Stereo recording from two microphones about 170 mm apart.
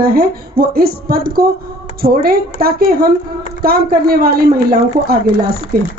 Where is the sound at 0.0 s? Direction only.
60° right (ahead or behind).